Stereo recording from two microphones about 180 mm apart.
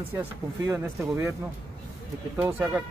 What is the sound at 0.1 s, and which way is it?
Speech, 10° right (ahead or behind).